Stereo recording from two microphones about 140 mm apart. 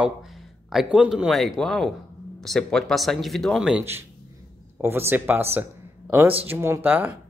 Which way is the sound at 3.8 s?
15° right (ahead or behind).